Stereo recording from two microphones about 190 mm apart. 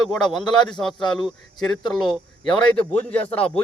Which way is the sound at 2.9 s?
5° left (ahead or behind).